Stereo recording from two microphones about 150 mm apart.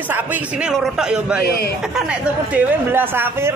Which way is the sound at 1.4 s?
90° left.